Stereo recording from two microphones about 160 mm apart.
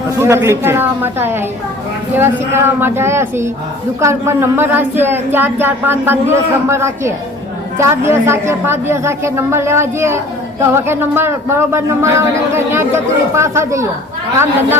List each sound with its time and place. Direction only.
0.2 s speech: 15° right (ahead or behind)